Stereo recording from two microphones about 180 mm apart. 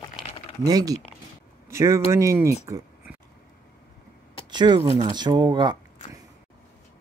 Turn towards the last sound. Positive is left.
turn(degrees=-25)  # may be behind; listen again after turning